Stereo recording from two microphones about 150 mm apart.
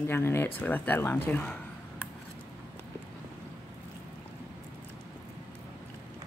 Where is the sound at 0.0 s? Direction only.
15° left (ahead or behind).